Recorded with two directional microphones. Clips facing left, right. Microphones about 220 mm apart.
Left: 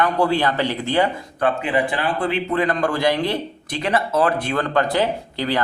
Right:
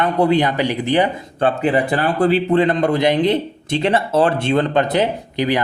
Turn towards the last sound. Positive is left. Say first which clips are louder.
# right 4 dB
turn(degrees=-20)  # may be behind; listen again after turning